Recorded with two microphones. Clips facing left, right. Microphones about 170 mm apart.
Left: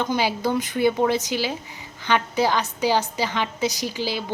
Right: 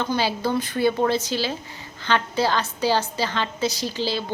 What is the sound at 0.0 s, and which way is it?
A woman's voice, 15° left (ahead or behind).